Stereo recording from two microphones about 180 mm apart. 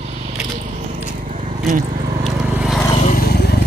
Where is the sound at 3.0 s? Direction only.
55° left (ahead or behind).